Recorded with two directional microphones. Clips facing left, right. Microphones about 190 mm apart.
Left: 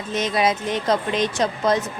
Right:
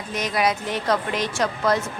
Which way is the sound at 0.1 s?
25° left (ahead or behind).